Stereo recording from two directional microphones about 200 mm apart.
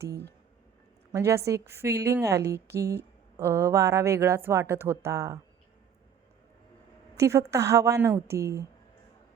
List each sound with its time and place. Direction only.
0.1 s speech: 55° right (ahead or behind)
1.1 s a woman's voice: 15° right (ahead or behind)
7.2 s a woman's voice: 15° right (ahead or behind)